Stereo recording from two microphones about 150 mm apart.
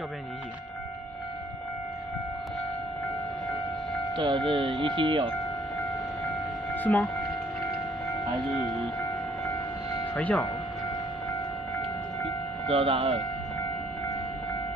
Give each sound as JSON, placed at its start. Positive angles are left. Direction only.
{"t": 4.2, "sound": "speech", "side_deg": -35}
{"t": 6.7, "sound": "a sound", "side_deg": 10}
{"t": 10.1, "sound": "speech", "side_deg": 10}
{"t": 12.6, "sound": "speech", "side_deg": -40}